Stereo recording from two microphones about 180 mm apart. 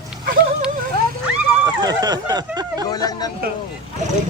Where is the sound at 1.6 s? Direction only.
20° right (ahead or behind).